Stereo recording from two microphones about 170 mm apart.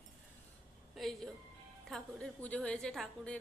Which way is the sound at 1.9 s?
5° left (ahead or behind).